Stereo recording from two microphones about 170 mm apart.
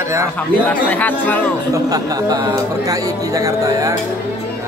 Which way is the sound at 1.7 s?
20° right (ahead or behind).